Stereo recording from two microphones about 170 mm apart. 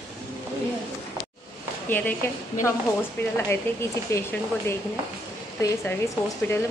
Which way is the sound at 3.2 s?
15° left (ahead or behind).